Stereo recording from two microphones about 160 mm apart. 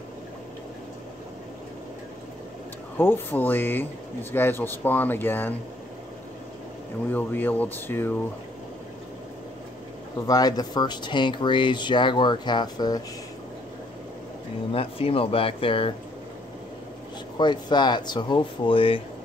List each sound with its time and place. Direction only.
3.0 s speech: 15° left (ahead or behind)
7.1 s speech: 10° left (ahead or behind)
10.2 s speech: 25° left (ahead or behind)
14.7 s speech: 35° left (ahead or behind)
17.4 s speech: 25° left (ahead or behind)